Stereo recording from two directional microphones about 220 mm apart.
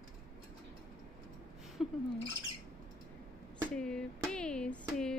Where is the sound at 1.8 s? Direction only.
Centre (ahead or behind).